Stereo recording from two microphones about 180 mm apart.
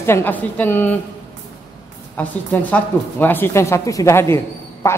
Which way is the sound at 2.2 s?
10° left (ahead or behind).